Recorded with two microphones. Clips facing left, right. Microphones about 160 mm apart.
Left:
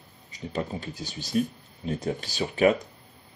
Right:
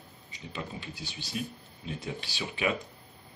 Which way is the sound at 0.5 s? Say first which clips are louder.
Left 8 dB; 40° left (ahead or behind).